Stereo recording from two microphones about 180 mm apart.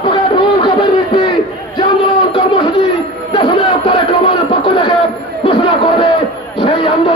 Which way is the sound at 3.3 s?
25° left (ahead or behind).